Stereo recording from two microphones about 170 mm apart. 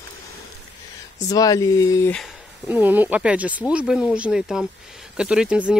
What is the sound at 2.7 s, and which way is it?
Speech, 10° right (ahead or behind).